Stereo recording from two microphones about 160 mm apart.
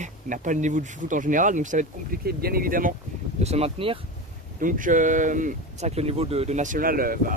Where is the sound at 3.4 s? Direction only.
40° right (ahead or behind).